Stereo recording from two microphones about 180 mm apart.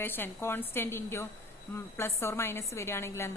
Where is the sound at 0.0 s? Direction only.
10° left (ahead or behind).